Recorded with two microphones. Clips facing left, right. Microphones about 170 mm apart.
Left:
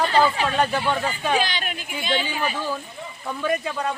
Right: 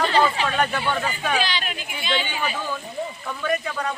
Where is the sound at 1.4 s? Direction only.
50° left (ahead or behind).